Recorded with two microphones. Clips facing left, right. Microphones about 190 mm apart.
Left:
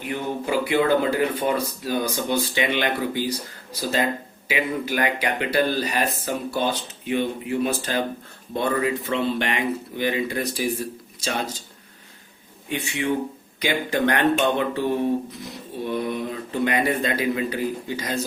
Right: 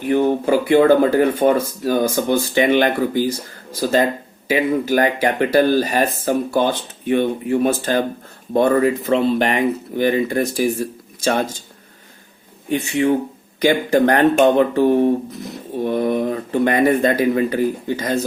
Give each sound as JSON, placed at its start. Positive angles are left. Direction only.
{"t": 0.1, "sound": "speech", "side_deg": -50}
{"t": 12.6, "sound": "speech", "side_deg": -45}